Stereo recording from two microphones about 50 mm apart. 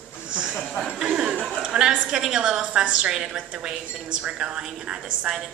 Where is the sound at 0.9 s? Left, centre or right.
Centre.